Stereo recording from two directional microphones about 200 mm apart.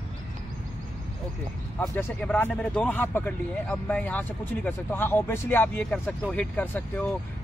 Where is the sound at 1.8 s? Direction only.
5° left (ahead or behind).